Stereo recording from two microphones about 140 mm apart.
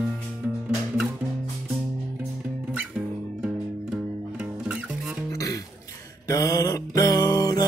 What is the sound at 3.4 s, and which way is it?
Music, 10° right (ahead or behind).